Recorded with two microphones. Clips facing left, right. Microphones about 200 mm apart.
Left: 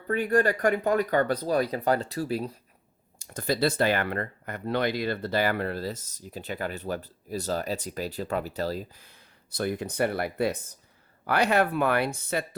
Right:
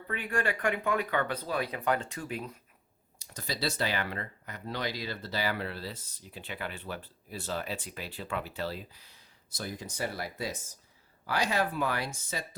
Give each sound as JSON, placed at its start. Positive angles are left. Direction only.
{"t": 0.1, "sound": "speech", "side_deg": 40}
{"t": 3.2, "sound": "speech", "side_deg": 50}